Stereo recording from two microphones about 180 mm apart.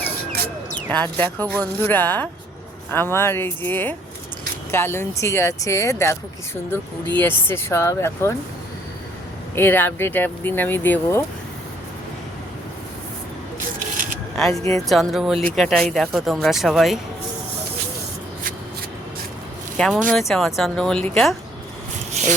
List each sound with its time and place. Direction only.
0.9 s speech: 10° left (ahead or behind)
9.6 s speech: 10° left (ahead or behind)
13.9 s a sound: 45° right (ahead or behind)
14.3 s speech: centre (ahead or behind)
19.7 s speech: 5° left (ahead or behind)